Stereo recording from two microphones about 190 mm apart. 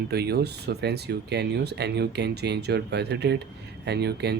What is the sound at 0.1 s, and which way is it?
Speech, 55° right (ahead or behind).